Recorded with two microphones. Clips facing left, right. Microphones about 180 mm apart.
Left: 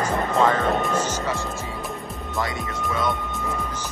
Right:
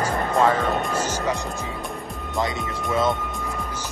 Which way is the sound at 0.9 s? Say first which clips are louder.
Even; 10° right (ahead or behind).